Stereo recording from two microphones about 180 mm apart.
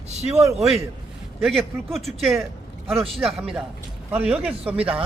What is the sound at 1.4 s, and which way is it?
Speech, centre (ahead or behind).